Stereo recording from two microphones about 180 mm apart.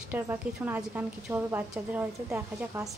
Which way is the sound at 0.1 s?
10° right (ahead or behind).